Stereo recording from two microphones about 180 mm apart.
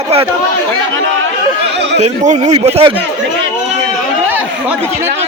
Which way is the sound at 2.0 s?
40° right (ahead or behind).